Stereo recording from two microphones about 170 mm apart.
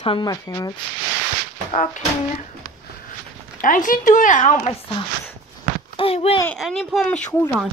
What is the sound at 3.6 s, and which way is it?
A woman's voice, 50° left (ahead or behind).